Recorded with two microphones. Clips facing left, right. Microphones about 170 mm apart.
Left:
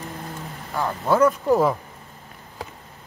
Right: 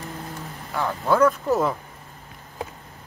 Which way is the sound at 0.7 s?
5° left (ahead or behind).